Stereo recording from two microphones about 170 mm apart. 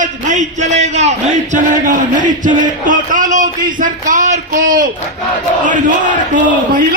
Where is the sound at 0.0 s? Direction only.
45° right (ahead or behind).